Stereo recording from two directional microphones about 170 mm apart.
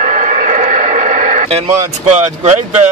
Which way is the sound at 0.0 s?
45° right (ahead or behind).